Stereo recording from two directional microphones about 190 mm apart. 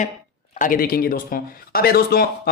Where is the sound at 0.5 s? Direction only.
45° left (ahead or behind).